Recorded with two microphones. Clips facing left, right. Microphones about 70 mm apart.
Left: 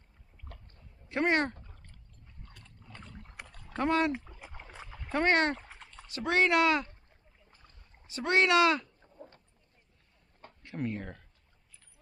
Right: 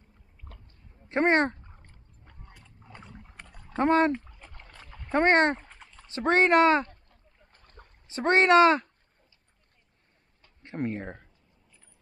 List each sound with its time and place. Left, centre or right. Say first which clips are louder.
0.5 s a sound: even; centre
1.0 s a sound: right 5 dB; right
2.4 s boat: right 1 dB; centre
2.9 s rowboat: right 2 dB; centre
3.8 s speech: right 6 dB; right
4.1 s rowboat: right 4 dB; centre
5.1 s speech: right 5 dB; right
5.6 s a sound: even; centre
6.0 s speech: right 5 dB; right
7.5 s boat: right 8 dB; right
8.1 s speech: right 5 dB; right
9.0 s a sound: left 16 dB; left
10.6 s speech: right 4 dB; right